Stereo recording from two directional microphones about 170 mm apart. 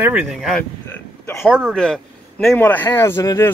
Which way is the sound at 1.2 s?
15° left (ahead or behind).